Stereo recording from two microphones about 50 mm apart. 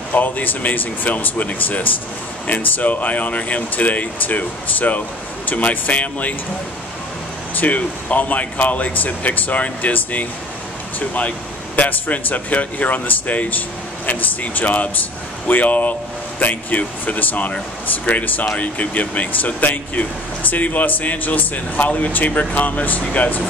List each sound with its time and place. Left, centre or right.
0.1 s speech: left
7.5 s speech: left